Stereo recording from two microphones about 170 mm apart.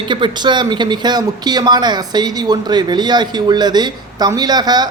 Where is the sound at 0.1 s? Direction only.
25° right (ahead or behind).